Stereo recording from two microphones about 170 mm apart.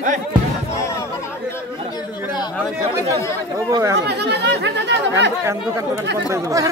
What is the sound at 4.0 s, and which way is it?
Speech, 85° right.